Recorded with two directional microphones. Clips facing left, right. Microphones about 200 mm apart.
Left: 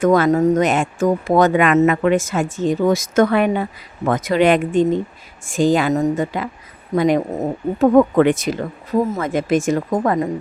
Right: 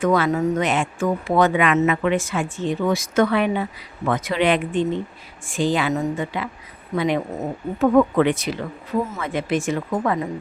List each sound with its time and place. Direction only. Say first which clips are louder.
0.0 s speech: left 5 dB; 45° left (ahead or behind)